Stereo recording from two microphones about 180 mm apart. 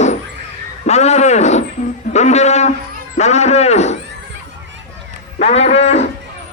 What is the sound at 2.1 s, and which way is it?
Livestock, 40° left (ahead or behind).